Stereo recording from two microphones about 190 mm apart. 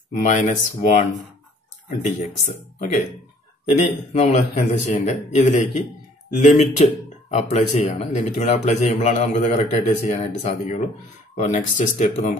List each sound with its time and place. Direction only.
0.1 s speech: 40° left (ahead or behind)
2.0 s speech: 40° left (ahead or behind)